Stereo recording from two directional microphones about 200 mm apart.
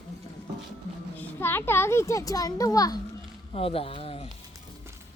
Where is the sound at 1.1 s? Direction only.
10° left (ahead or behind); by 4.3 s 30° left (ahead or behind).